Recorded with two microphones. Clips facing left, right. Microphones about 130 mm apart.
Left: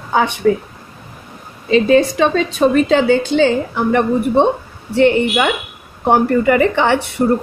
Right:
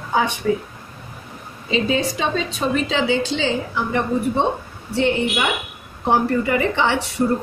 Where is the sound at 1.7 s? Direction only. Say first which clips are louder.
Left 9 dB; 55° left (ahead or behind).